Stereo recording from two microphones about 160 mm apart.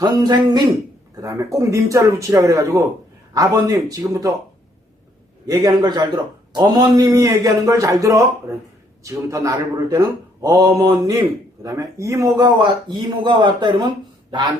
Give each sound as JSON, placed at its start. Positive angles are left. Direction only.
{"t": 0.0, "sound": "a man's voice", "side_deg": -25}
{"t": 5.5, "sound": "a man's voice", "side_deg": -25}